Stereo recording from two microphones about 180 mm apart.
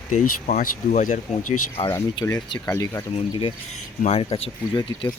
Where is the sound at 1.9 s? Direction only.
15° left (ahead or behind).